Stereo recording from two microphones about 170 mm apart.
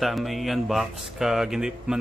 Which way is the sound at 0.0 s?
Centre (ahead or behind).